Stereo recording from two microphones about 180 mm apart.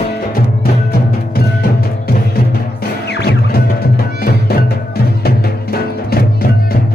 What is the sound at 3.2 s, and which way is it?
Music, 60° left (ahead or behind).